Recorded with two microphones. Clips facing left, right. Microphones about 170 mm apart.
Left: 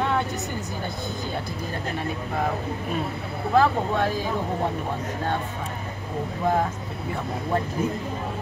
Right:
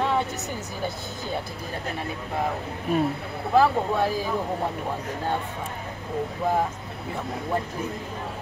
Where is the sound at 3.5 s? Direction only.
5° right (ahead or behind).